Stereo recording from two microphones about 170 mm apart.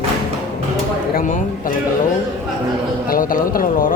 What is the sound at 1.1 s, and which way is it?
Speech, 50° left (ahead or behind).